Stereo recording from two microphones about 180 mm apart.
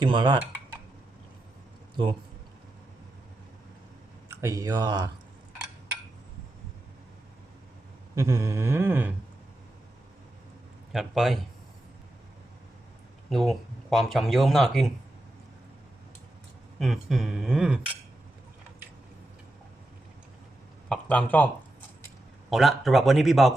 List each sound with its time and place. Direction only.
0.0 s speech: 25° right (ahead or behind)
4.3 s speech: 15° right (ahead or behind)
8.1 s a sound: 20° right (ahead or behind)
10.9 s speech: centre (ahead or behind)
13.3 s speech: centre (ahead or behind)
16.8 s speech: centre (ahead or behind)
20.9 s speech: 5° left (ahead or behind)